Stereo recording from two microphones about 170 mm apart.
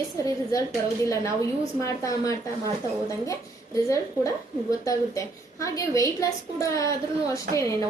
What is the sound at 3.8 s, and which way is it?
A woman's voice, 20° left (ahead or behind).